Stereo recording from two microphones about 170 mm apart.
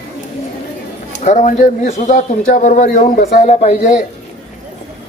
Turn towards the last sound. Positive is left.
turn(degrees=45)  # may be behind; listen again after turning